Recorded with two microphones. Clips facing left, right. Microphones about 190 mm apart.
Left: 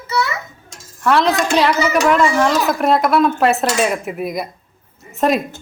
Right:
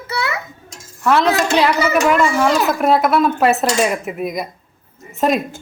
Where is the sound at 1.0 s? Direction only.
Centre (ahead or behind).